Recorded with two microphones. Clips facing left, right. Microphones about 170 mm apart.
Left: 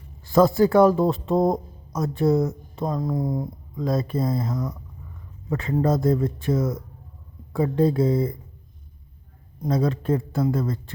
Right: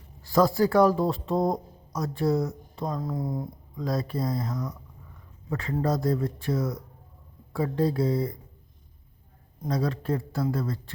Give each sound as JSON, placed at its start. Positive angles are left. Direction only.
{"t": 0.3, "sound": "speech", "side_deg": 25}
{"t": 9.6, "sound": "speech", "side_deg": 20}